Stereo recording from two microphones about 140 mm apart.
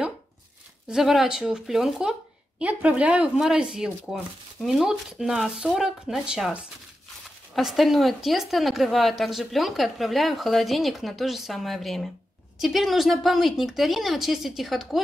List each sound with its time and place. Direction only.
0.8 s a woman's voice: 5° right (ahead or behind)